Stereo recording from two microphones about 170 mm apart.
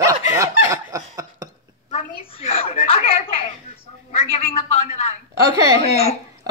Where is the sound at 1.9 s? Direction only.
35° left (ahead or behind).